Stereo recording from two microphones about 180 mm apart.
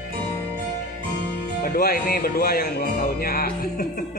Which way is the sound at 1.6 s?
55° left (ahead or behind).